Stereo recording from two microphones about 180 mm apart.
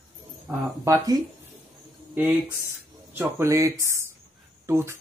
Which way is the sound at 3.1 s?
15° right (ahead or behind).